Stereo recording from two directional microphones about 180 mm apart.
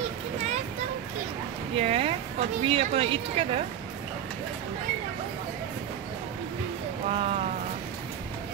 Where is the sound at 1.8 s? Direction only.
35° right (ahead or behind).